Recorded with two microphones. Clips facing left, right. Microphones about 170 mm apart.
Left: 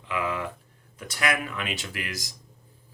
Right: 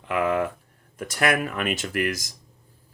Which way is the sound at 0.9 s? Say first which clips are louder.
Right 5 dB; 50° right (ahead or behind).